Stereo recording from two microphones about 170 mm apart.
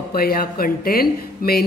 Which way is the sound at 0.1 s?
60° left (ahead or behind).